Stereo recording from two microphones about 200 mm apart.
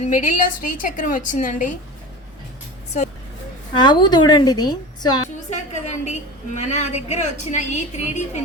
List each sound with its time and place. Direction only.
0.0 s a woman's voice: 40° left (ahead or behind)
3.8 s a woman's voice: 20° left (ahead or behind)
5.5 s a woman's voice: 35° left (ahead or behind)